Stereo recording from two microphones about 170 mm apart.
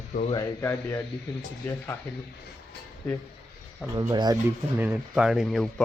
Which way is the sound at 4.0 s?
25° right (ahead or behind).